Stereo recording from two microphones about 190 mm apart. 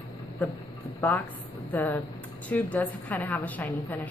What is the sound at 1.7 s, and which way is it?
A woman's voice, 10° left (ahead or behind).